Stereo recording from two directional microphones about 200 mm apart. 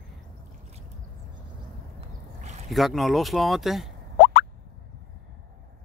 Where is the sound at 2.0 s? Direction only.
35° right (ahead or behind).